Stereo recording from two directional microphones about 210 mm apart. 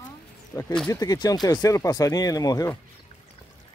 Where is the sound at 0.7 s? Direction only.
5° left (ahead or behind).